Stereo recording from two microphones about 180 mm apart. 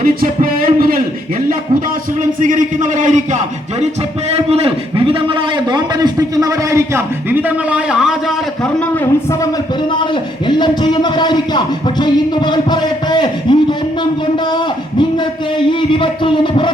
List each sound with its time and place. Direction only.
0.0 s a sound: 55° right (ahead or behind)
2.4 s a man's voice: 45° right (ahead or behind); by 8.1 s 5° right (ahead or behind)
9.9 s a man's voice: 25° left (ahead or behind)
15.5 s a man's voice: 25° left (ahead or behind)